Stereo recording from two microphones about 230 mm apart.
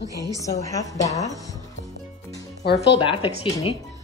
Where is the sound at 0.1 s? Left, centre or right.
Centre.